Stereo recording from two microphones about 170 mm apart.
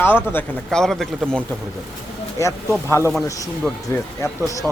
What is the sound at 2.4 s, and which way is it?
A man's voice, 15° left (ahead or behind).